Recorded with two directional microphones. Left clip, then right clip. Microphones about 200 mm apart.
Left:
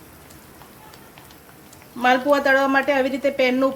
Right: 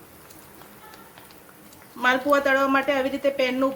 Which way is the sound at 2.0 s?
10° left (ahead or behind).